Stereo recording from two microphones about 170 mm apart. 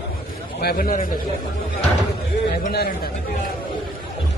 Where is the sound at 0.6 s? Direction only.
60° left (ahead or behind).